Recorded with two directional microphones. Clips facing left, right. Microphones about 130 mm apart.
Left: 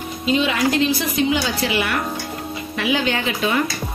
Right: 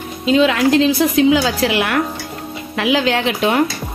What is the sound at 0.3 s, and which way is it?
A woman's voice, 90° right.